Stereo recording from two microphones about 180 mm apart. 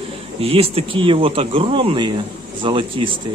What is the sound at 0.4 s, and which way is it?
Speech, 30° right (ahead or behind).